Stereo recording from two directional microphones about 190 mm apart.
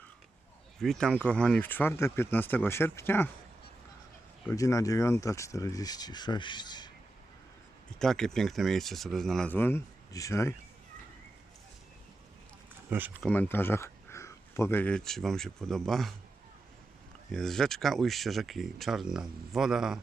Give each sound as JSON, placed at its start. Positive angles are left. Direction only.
{"t": 0.8, "sound": "speech", "side_deg": 5}
{"t": 4.4, "sound": "speech", "side_deg": 15}
{"t": 7.9, "sound": "speech", "side_deg": 5}
{"t": 12.9, "sound": "speech", "side_deg": -10}
{"t": 13.2, "sound": "speech", "side_deg": 10}
{"t": 17.3, "sound": "speech", "side_deg": 0}